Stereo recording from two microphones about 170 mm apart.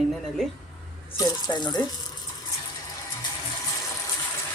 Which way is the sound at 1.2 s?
25° left (ahead or behind).